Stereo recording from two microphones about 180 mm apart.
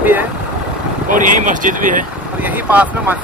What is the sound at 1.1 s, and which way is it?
Speech, 45° right (ahead or behind).